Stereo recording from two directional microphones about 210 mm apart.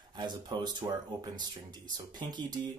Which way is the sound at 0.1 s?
20° right (ahead or behind).